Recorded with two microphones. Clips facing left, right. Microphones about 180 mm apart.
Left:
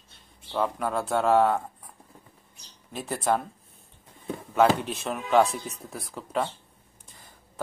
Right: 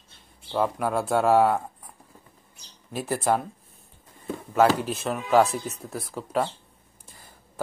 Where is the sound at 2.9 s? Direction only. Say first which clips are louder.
Right 2 dB; 5° right (ahead or behind).